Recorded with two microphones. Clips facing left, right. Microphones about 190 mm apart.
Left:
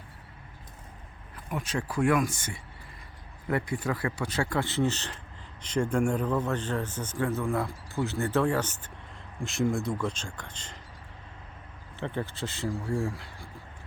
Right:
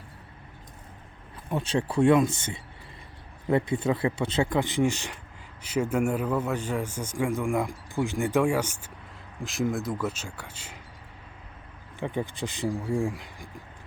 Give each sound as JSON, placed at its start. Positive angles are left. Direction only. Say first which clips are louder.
{"t": 1.5, "sound": "speech", "louder": "right 5 dB", "side_deg": -30}
{"t": 11.9, "sound": "speech", "louder": "right 3 dB", "side_deg": -15}